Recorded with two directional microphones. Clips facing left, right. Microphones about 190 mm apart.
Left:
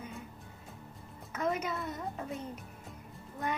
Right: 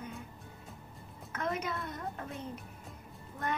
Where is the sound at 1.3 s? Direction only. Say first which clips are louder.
Left 2 dB; 10° left (ahead or behind).